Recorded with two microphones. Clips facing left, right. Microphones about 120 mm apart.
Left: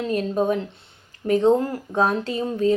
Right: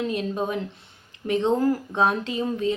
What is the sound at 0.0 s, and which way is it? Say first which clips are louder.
A woman's voice: left 4 dB; 40° left (ahead or behind).